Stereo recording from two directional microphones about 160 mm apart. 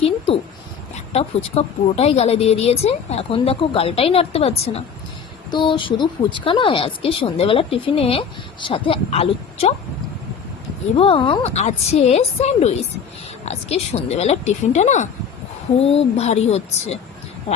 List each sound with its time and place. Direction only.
1.1 s a woman's voice: 40° left (ahead or behind)
5.5 s a woman's voice: 30° left (ahead or behind)
10.9 s a woman's voice: 35° left (ahead or behind)
15.8 s a woman's voice: 40° left (ahead or behind)